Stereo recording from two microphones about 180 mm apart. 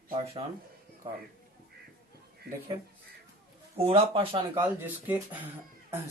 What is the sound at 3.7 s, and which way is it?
Speech, 30° right (ahead or behind).